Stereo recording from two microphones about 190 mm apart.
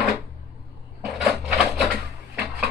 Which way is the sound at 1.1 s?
Centre (ahead or behind).